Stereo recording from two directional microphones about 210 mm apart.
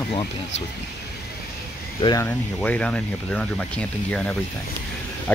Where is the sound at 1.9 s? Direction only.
20° left (ahead or behind).